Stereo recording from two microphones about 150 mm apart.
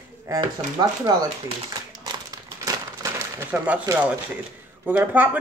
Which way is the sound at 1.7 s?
30° right (ahead or behind).